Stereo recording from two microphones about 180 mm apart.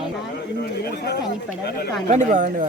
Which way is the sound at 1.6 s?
65° left (ahead or behind).